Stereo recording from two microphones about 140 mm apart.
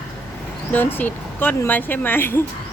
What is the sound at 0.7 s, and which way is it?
Speech, 15° left (ahead or behind).